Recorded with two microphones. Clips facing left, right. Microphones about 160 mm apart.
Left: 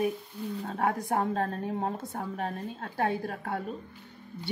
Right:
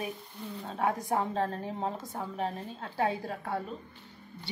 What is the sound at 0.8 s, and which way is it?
A woman's voice, 60° left (ahead or behind).